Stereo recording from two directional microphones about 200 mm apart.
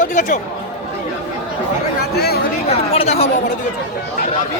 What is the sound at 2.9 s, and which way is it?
Speech, 30° left (ahead or behind).